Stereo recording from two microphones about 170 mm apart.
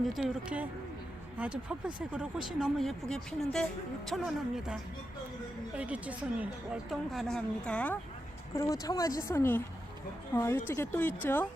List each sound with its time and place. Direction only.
0.0 s a woman's voice: centre (ahead or behind)
8.5 s speech: 20° left (ahead or behind)